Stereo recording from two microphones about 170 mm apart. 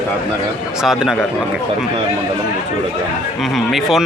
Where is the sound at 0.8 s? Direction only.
5° right (ahead or behind).